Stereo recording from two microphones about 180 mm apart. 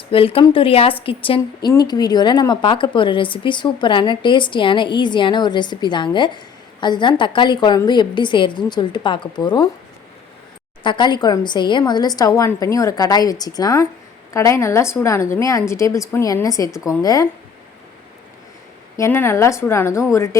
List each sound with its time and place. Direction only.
0.1 s a woman's voice: 30° left (ahead or behind)
10.8 s a woman's voice: 25° left (ahead or behind)
18.9 s a woman's voice: 15° left (ahead or behind)